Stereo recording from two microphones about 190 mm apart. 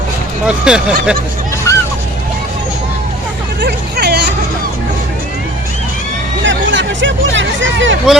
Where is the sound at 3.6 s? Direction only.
60° right (ahead or behind).